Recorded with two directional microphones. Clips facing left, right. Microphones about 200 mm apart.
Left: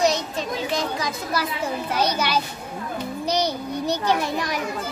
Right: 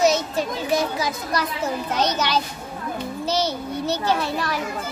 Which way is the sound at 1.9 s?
10° left (ahead or behind).